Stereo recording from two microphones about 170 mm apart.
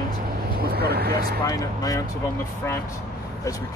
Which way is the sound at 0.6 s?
65° right (ahead or behind).